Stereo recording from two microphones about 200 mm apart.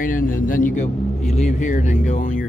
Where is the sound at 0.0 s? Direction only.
45° left (ahead or behind).